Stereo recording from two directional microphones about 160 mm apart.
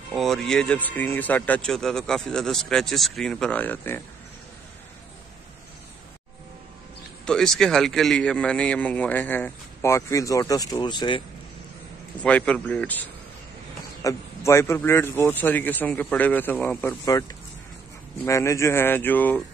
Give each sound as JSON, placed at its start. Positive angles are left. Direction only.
{"t": 0.1, "sound": "speech", "side_deg": 0}
{"t": 7.2, "sound": "a man's voice", "side_deg": 5}
{"t": 12.2, "sound": "a man's voice", "side_deg": 10}
{"t": 17.1, "sound": "a man's voice", "side_deg": 20}